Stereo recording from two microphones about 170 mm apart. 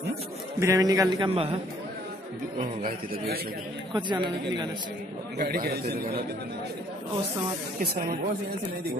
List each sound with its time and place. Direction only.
0.6 s a man's voice: 20° right (ahead or behind); by 1.6 s 35° right (ahead or behind)
3.9 s a man's voice: 25° right (ahead or behind)
5.4 s a man's voice: 65° right (ahead or behind)
7.8 s speech: 65° right (ahead or behind)